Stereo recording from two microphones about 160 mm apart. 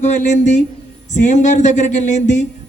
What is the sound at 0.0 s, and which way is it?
A man's voice, 50° left (ahead or behind).